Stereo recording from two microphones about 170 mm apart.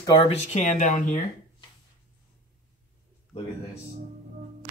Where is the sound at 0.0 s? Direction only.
30° left (ahead or behind); by 1.2 s 50° left (ahead or behind).